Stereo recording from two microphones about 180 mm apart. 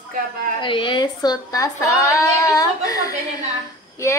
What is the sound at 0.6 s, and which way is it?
A woman's voice, 25° left (ahead or behind).